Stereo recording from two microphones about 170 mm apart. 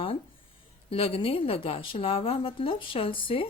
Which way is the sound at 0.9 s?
35° left (ahead or behind).